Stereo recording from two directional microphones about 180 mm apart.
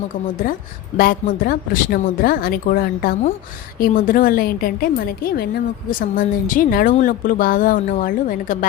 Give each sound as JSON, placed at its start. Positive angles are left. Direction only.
{"t": 0.9, "sound": "a woman's voice", "side_deg": 55}